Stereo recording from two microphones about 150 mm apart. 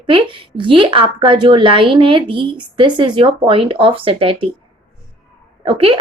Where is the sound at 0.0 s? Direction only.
35° right (ahead or behind).